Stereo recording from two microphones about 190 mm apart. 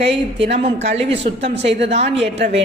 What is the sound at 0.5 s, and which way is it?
A man's voice, 35° right (ahead or behind).